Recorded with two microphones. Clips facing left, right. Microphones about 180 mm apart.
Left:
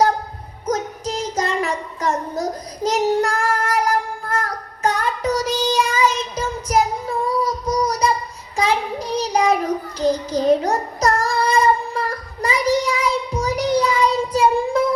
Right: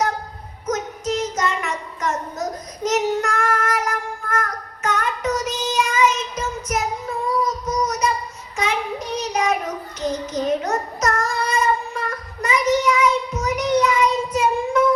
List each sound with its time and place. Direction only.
0.7 s child singing: 35° left (ahead or behind)
7.4 s a sound: 35° left (ahead or behind)
8.5 s child singing: 35° left (ahead or behind)